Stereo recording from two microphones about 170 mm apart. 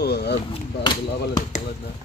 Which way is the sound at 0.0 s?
75° left (ahead or behind).